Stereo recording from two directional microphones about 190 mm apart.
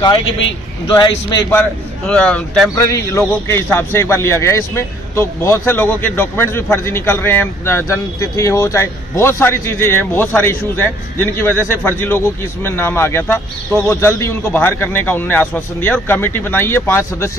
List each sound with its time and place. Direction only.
0.8 s a man's voice: 20° left (ahead or behind)
1.5 s a man's voice: 5° left (ahead or behind)
2.7 s a man's voice: 15° left (ahead or behind)